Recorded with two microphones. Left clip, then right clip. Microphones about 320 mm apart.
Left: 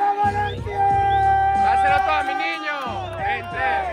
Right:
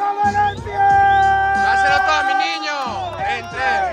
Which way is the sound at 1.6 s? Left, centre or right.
Centre.